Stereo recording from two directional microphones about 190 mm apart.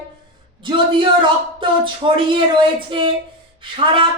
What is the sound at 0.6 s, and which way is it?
Speech, 25° right (ahead or behind).